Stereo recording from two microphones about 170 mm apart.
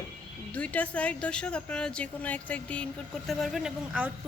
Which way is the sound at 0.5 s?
10° left (ahead or behind).